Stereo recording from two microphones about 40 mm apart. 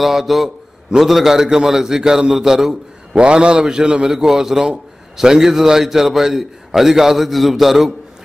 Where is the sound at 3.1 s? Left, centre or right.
Right.